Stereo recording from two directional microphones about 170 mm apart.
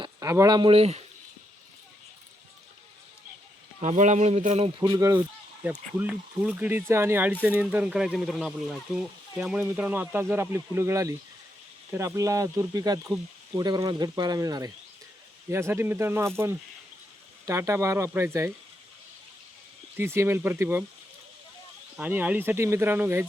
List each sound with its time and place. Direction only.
0.0 s speech: 20° right (ahead or behind); by 1.0 s 35° right (ahead or behind)
3.8 s speech: 45° right (ahead or behind)
4.8 s speech: 25° right (ahead or behind)
5.6 s speech: 10° right (ahead or behind)
20.0 s speech: 15° right (ahead or behind)
21.9 s speech: 10° right (ahead or behind)